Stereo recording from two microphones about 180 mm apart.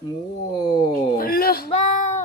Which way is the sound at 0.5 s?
25° left (ahead or behind).